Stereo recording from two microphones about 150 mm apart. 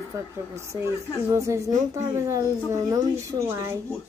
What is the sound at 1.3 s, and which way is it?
A woman's voice, 20° right (ahead or behind).